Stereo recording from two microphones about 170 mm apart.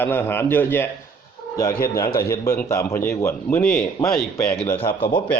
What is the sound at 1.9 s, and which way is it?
A man's voice, 20° left (ahead or behind).